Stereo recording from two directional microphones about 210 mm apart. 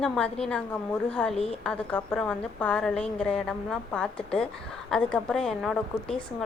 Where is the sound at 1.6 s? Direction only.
5° left (ahead or behind).